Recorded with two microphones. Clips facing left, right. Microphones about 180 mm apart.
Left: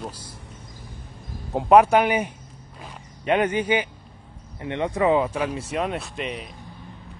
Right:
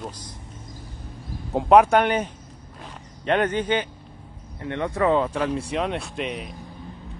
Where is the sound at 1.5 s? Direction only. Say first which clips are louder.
Even; centre (ahead or behind).